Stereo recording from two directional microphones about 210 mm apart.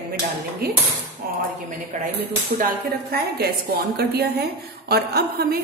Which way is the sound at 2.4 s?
40° right (ahead or behind).